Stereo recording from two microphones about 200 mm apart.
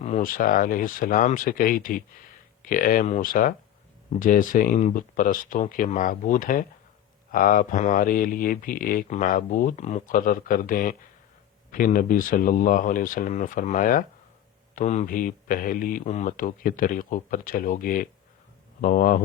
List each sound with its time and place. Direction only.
0.0 s speech: 40° left (ahead or behind)